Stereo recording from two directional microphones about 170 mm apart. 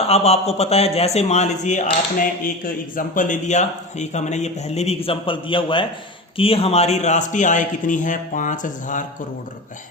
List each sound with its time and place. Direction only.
0.1 s a man's voice: 40° left (ahead or behind)